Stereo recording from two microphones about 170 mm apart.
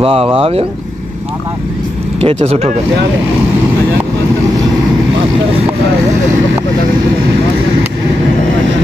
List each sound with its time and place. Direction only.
0.0 s speech: 35° right (ahead or behind)
2.1 s speech: 35° right (ahead or behind)